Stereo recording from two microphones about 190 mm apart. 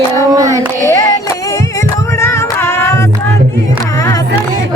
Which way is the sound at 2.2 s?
15° left (ahead or behind).